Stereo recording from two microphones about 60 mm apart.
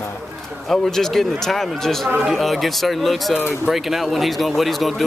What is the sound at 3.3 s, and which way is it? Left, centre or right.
Speech, left.